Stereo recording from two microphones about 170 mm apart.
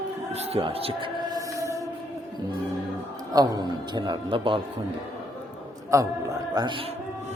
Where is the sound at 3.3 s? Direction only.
25° right (ahead or behind).